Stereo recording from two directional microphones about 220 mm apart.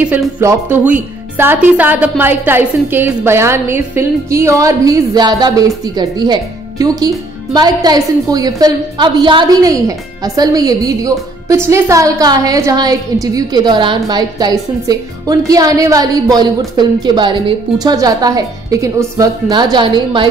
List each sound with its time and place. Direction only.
0.0 s a woman's voice: 5° right (ahead or behind)